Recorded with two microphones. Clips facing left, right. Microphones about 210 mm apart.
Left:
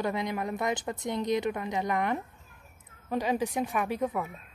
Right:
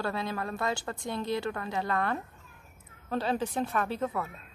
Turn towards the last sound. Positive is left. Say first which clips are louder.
# left 2 dB
turn(degrees=15)  # may be behind; listen again after turning